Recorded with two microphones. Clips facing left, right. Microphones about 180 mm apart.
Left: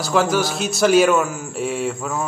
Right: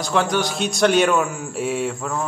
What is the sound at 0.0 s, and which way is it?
A man's voice, 5° left (ahead or behind).